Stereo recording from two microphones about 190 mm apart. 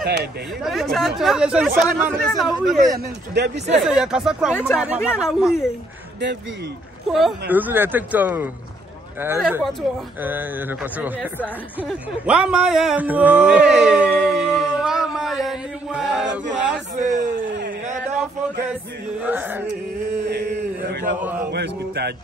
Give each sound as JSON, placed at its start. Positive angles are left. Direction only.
{"t": 0.7, "sound": "speech", "side_deg": 0}
{"t": 2.9, "sound": "speech", "side_deg": -60}
{"t": 3.8, "sound": "speech", "side_deg": -5}
{"t": 7.1, "sound": "speech", "side_deg": 0}
{"t": 9.6, "sound": "speech", "side_deg": 0}
{"t": 10.2, "sound": "speech", "side_deg": -10}
{"t": 16.9, "sound": "a man's voice", "side_deg": -40}
{"t": 19.2, "sound": "speech", "side_deg": -10}
{"t": 21.5, "sound": "a sound", "side_deg": -60}